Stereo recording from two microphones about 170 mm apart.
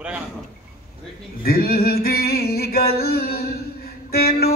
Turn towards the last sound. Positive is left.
turn(degrees=65)  # may be behind; listen again after turning